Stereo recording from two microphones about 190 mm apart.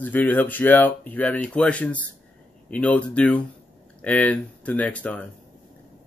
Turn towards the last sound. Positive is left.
turn(degrees=5)  # may be behind; listen again after turning